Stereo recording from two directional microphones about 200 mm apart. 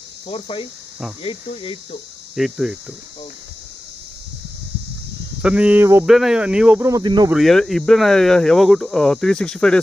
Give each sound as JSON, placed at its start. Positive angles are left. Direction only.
{"t": 0.3, "sound": "speech", "side_deg": 30}
{"t": 2.3, "sound": "speech", "side_deg": 0}
{"t": 5.4, "sound": "speech", "side_deg": -5}
{"t": 7.2, "sound": "speech", "side_deg": 0}